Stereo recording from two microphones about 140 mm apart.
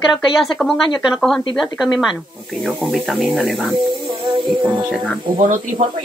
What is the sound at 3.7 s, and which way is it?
Music, 35° right (ahead or behind).